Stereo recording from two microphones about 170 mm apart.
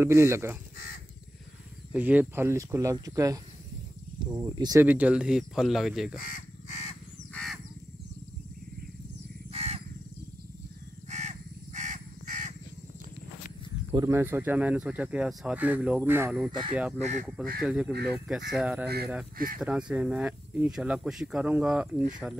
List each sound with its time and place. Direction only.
0.0 s speech: 15° right (ahead or behind)
1.9 s speech: 10° right (ahead or behind)
4.8 s speech: 10° right (ahead or behind)
6.1 s fowl: 55° left (ahead or behind)
7.3 s a sound: centre (ahead or behind)
9.5 s crow: 35° right (ahead or behind)
11.1 s crow: 45° right (ahead or behind)
13.9 s speech: 15° right (ahead or behind)
17.6 s speech: 5° right (ahead or behind)
19.3 s speech: 55° right (ahead or behind)
19.6 s speech: 5° right (ahead or behind)